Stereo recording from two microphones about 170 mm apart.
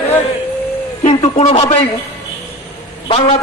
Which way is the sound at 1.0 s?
35° left (ahead or behind).